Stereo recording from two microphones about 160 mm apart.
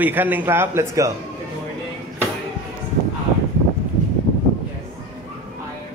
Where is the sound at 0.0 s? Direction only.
10° right (ahead or behind).